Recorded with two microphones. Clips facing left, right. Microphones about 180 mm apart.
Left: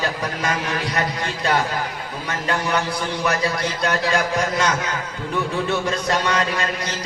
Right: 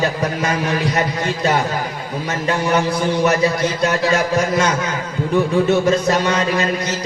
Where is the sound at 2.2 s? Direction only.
25° right (ahead or behind).